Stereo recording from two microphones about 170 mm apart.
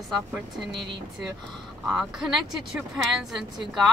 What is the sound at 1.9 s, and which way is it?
Speech, 5° right (ahead or behind).